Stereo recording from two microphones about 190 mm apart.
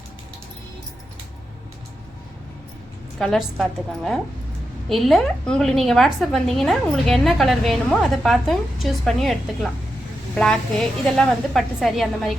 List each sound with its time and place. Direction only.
3.2 s a woman's voice: centre (ahead or behind)